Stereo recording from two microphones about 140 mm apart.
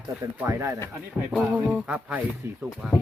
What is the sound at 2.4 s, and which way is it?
Speech, 20° right (ahead or behind).